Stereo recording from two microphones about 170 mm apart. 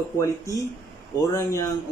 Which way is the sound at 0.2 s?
20° left (ahead or behind).